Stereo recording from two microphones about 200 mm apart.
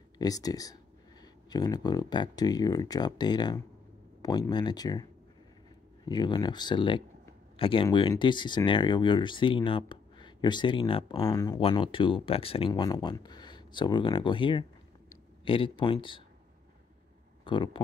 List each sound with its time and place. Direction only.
0.2 s speech: 20° left (ahead or behind)
6.0 s speech: 20° left (ahead or behind)
17.5 s speech: 25° left (ahead or behind)